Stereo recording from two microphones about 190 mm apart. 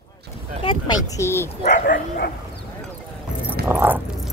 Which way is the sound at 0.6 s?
20° left (ahead or behind).